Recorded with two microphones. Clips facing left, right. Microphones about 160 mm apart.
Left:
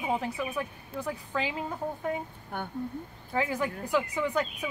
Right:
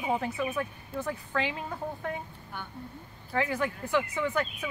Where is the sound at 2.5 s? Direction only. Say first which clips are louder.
Left 6 dB; 50° left (ahead or behind).